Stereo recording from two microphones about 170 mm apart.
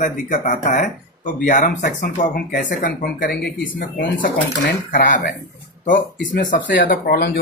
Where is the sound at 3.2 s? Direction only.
70° left (ahead or behind).